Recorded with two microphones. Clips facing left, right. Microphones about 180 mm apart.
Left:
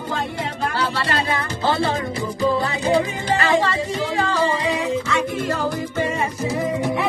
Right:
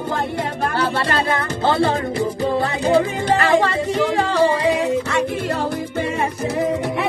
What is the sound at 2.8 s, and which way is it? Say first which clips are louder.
Music: right 3 dB; 55° right (ahead or behind).